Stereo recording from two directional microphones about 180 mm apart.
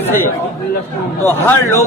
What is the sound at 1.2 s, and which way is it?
Speech, 15° left (ahead or behind).